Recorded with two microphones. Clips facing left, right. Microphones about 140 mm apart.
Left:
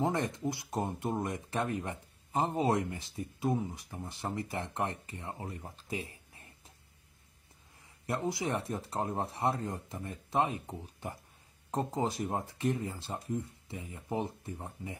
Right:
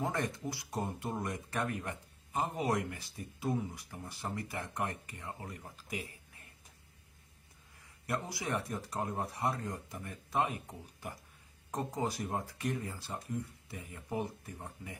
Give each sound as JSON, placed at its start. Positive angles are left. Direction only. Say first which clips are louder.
{"t": 0.0, "sound": "speech", "louder": "left 4 dB", "side_deg": 20}
{"t": 8.1, "sound": "speech", "louder": "left 3 dB", "side_deg": 20}